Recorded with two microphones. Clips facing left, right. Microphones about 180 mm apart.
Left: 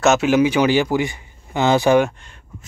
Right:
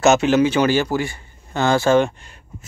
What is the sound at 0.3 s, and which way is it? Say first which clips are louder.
Speech: left 1 dB; 10° left (ahead or behind).